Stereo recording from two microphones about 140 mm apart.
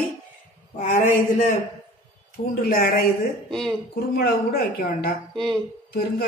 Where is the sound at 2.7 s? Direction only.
90° left.